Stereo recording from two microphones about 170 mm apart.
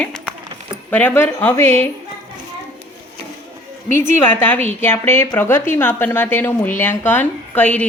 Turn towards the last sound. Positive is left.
turn(degrees=10)  # may be behind; listen again after turning